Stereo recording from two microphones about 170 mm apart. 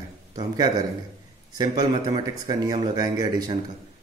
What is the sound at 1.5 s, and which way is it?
Speech, 25° right (ahead or behind).